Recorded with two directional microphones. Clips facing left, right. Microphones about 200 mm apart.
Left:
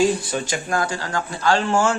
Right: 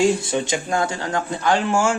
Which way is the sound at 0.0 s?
25° right (ahead or behind).